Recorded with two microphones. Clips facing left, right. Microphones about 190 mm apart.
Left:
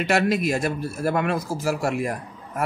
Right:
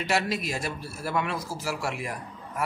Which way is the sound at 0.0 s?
55° left (ahead or behind).